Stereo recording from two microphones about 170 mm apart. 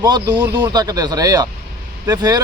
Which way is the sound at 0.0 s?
25° right (ahead or behind).